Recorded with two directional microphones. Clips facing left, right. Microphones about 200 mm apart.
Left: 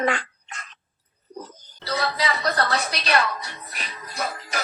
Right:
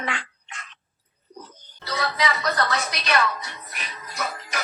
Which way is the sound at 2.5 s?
35° left (ahead or behind).